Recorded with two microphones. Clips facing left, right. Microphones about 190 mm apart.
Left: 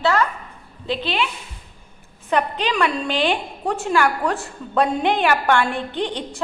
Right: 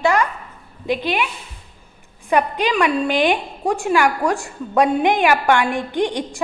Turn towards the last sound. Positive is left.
turn(degrees=-15)  # may be behind; listen again after turning